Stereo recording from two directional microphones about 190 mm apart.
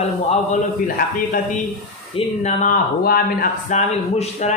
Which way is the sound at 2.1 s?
35° left (ahead or behind).